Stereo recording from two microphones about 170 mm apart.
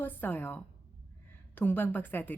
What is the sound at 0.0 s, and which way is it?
A woman's voice, 10° left (ahead or behind).